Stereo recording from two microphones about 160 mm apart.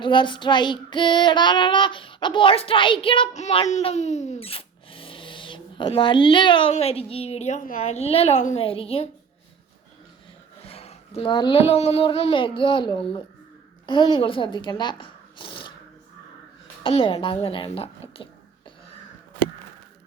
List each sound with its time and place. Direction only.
0.0 s child singing: 30° left (ahead or behind)
10.7 s child singing: 40° left (ahead or behind)
13.8 s speech: 30° left (ahead or behind)
16.8 s a woman's voice: 35° left (ahead or behind)